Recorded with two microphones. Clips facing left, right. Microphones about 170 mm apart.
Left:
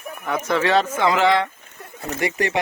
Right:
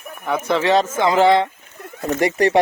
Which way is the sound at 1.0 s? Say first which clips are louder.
Right 3 dB; 30° right (ahead or behind).